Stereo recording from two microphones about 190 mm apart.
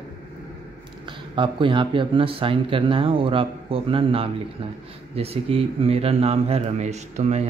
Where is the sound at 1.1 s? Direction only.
25° right (ahead or behind).